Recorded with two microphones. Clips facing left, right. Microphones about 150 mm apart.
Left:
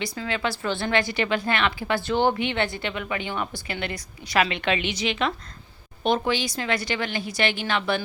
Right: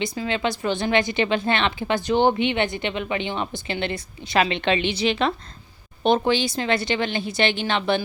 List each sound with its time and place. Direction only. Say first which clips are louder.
0.0 s a woman's voice: right 3 dB; 20° right (ahead or behind)